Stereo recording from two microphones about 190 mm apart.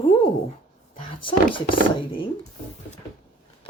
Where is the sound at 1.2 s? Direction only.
25° left (ahead or behind).